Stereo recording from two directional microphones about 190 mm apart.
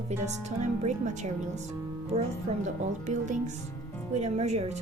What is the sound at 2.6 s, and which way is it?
Music, 40° right (ahead or behind).